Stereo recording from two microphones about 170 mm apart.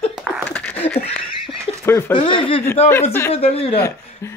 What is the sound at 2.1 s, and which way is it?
Speech, 30° left (ahead or behind).